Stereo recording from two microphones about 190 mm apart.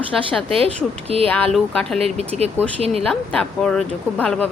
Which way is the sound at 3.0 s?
5° left (ahead or behind).